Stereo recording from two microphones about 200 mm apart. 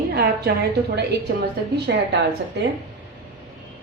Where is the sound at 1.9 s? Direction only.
60° right (ahead or behind).